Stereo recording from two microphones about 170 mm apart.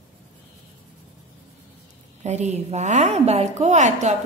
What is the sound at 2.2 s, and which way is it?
A woman's voice, 40° right (ahead or behind).